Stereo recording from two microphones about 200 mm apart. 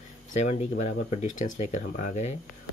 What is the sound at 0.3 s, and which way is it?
Speech, 35° left (ahead or behind).